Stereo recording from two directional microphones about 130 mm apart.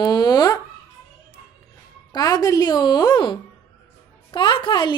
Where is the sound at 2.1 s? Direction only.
30° left (ahead or behind).